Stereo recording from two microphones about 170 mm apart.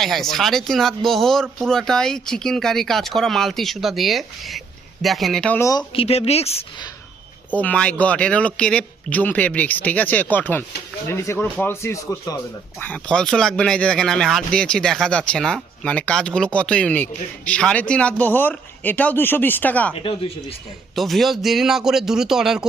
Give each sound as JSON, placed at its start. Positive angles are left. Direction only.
{"t": 0.0, "sound": "speech", "side_deg": 0}
{"t": 6.0, "sound": "speech", "side_deg": 35}
{"t": 7.5, "sound": "speech", "side_deg": 10}
{"t": 12.8, "sound": "speech", "side_deg": 5}
{"t": 20.9, "sound": "speech", "side_deg": 0}